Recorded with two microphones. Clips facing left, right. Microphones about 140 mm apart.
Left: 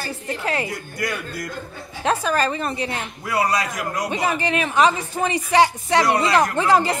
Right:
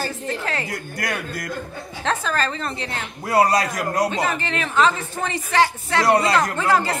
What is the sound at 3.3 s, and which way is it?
Speech, 40° right (ahead or behind).